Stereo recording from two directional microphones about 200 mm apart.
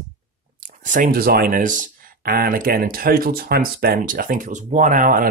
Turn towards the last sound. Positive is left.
turn(degrees=-45)  # may be behind; listen again after turning